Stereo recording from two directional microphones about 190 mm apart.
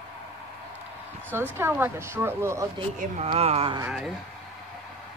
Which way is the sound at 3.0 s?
40° right (ahead or behind).